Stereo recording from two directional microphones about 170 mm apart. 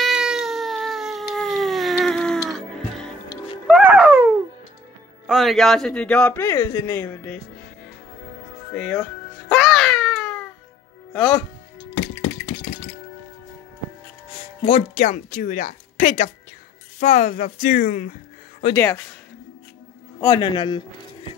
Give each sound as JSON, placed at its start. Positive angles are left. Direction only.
{"t": 0.0, "sound": "cat", "side_deg": -5}
{"t": 3.8, "sound": "a sound", "side_deg": -10}
{"t": 5.2, "sound": "a man's voice", "side_deg": 0}
{"t": 8.7, "sound": "speech", "side_deg": 5}
{"t": 9.5, "sound": "babbling", "side_deg": 0}
{"t": 11.1, "sound": "a man's voice", "side_deg": 10}
{"t": 14.4, "sound": "speech", "side_deg": 35}
{"t": 18.8, "sound": "a man's voice", "side_deg": 10}
{"t": 20.2, "sound": "a man's voice", "side_deg": 25}